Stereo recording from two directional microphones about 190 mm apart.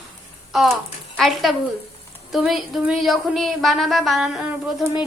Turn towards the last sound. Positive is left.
turn(degrees=0)  # may be behind; listen again after turning